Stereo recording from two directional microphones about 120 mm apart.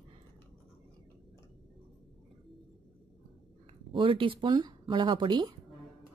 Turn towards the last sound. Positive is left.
turn(degrees=-40)  # may be behind; listen again after turning